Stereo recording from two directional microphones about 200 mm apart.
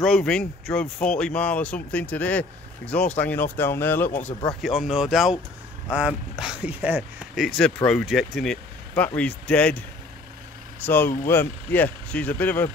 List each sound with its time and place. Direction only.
0.0 s speech: centre (ahead or behind)
4.3 s speech: 25° left (ahead or behind)
4.6 s speech: centre (ahead or behind)